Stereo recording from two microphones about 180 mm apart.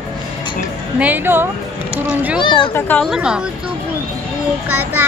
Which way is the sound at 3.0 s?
5° right (ahead or behind).